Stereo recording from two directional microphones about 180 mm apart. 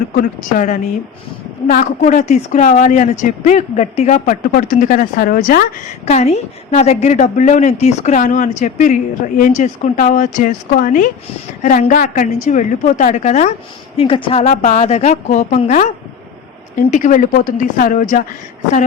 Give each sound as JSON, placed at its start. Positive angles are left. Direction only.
{"t": 0.2, "sound": "a woman's voice", "side_deg": 45}
{"t": 6.1, "sound": "a woman's voice", "side_deg": 40}
{"t": 16.9, "sound": "a woman's voice", "side_deg": 45}